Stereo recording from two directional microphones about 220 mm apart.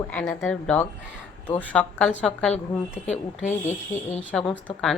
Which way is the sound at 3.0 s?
30° left (ahead or behind).